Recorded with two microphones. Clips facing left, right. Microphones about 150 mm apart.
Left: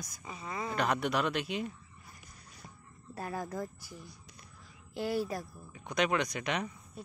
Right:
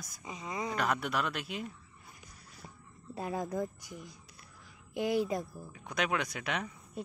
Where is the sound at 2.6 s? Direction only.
10° right (ahead or behind).